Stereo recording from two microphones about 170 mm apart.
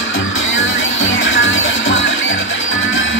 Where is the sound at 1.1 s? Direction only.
90° left.